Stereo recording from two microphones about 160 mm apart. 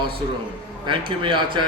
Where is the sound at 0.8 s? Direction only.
30° right (ahead or behind).